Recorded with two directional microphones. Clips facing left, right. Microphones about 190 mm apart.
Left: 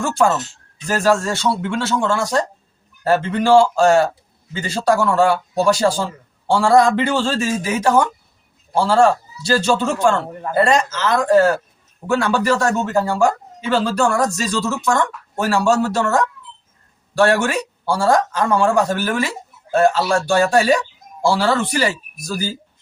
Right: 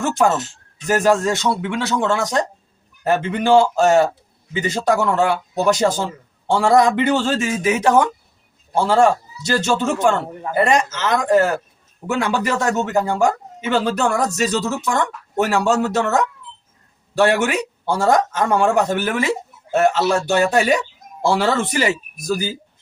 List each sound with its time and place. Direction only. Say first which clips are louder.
0.9 s speech: right 1 dB; 20° right (ahead or behind)